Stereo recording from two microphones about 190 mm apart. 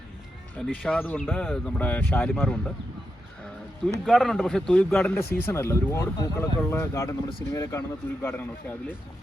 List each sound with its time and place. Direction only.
0.6 s speech: 5° left (ahead or behind)
4.0 s speech: centre (ahead or behind)
7.3 s speech: 25° left (ahead or behind)
7.6 s speech: 15° left (ahead or behind)